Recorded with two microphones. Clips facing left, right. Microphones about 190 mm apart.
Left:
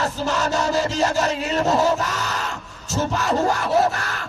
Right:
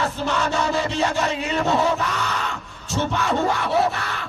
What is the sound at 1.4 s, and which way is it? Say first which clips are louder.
Music: left 1 dB; 40° left (ahead or behind).